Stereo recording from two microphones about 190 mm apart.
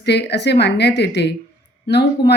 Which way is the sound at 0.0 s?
60° left (ahead or behind).